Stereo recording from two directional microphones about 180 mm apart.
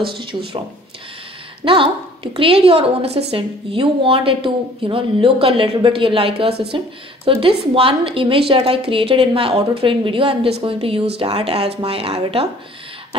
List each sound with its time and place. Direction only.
0.1 s speech: 30° right (ahead or behind)
1.6 s a woman's voice: 30° right (ahead or behind)